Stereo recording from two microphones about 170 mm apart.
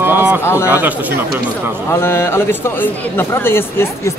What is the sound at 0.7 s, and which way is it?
Speech, 10° right (ahead or behind).